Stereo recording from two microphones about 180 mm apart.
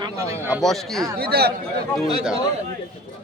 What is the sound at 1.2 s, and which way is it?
Speech, 60° right (ahead or behind).